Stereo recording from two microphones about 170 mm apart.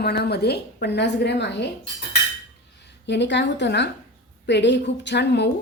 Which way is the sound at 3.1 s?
90° left.